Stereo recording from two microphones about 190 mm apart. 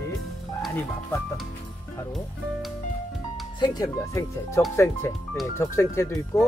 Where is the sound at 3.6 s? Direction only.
20° left (ahead or behind).